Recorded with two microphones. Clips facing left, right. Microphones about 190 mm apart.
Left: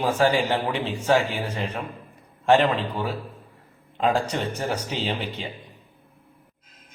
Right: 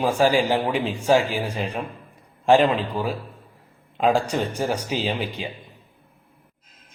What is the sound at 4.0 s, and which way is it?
A man's voice, 15° right (ahead or behind).